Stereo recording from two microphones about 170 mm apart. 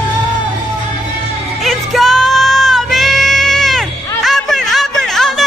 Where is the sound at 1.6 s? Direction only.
Centre (ahead or behind).